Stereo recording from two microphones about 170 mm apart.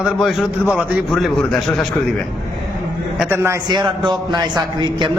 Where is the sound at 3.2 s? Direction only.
15° right (ahead or behind).